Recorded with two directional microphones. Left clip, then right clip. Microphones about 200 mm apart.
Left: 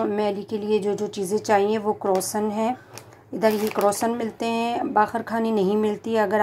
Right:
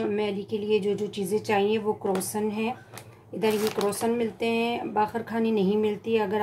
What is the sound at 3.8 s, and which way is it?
A woman's voice, 25° left (ahead or behind).